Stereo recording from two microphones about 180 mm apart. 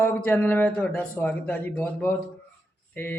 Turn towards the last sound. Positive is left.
turn(degrees=10)  # may be behind; listen again after turning